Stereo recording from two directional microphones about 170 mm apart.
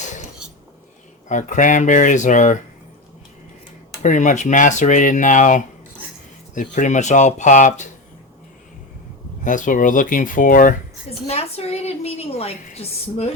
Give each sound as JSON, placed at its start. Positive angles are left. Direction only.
{"t": 1.3, "sound": "speech", "side_deg": 50}
{"t": 4.0, "sound": "speech", "side_deg": 45}
{"t": 9.4, "sound": "speech", "side_deg": 50}
{"t": 11.3, "sound": "a woman's voice", "side_deg": 40}